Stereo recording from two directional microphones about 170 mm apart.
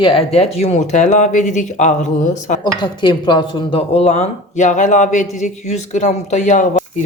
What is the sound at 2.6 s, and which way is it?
Speech, 25° left (ahead or behind).